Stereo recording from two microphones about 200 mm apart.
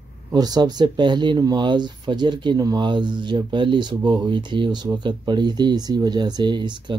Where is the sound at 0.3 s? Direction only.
20° right (ahead or behind).